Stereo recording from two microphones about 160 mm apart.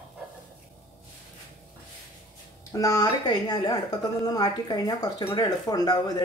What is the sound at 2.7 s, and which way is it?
Speech, 20° left (ahead or behind).